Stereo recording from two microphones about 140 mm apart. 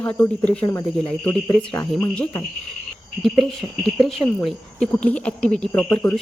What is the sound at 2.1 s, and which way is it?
Speech, 10° left (ahead or behind).